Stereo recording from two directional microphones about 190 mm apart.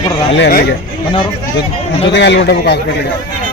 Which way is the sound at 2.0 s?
65° left (ahead or behind).